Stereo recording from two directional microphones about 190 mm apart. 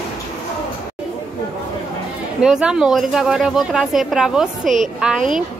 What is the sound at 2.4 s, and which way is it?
Speech, 5° right (ahead or behind).